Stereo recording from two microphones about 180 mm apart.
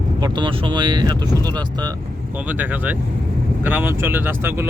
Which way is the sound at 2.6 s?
10° right (ahead or behind).